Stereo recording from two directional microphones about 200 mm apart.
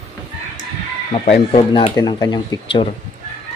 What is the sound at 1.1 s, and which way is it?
Speech, 30° left (ahead or behind).